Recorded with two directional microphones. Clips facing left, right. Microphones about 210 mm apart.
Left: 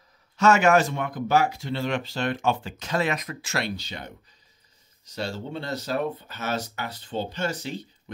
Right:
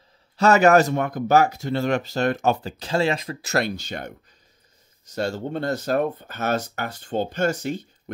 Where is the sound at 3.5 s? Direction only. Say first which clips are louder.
Right 6 dB; 45° right (ahead or behind).